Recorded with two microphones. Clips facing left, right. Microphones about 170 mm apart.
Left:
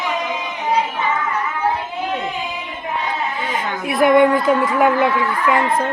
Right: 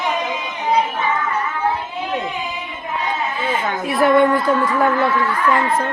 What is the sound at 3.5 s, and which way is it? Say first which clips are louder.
A woman's voice: right 2 dB; 10° left (ahead or behind).